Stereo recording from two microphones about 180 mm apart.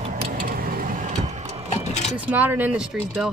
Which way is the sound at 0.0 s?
35° right (ahead or behind).